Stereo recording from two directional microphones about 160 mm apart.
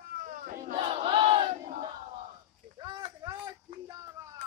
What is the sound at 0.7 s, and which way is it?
Battle cry, 35° right (ahead or behind).